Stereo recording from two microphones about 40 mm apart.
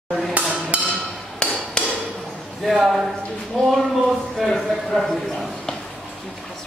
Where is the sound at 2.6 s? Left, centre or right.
Centre.